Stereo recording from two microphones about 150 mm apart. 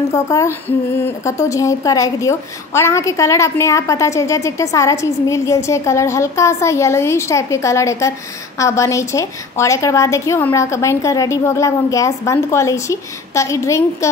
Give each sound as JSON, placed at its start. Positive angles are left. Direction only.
{"t": 0.1, "sound": "female singing", "side_deg": 20}
{"t": 1.2, "sound": "a woman's voice", "side_deg": 20}